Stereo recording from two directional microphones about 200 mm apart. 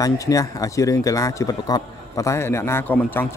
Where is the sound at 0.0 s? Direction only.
15° left (ahead or behind).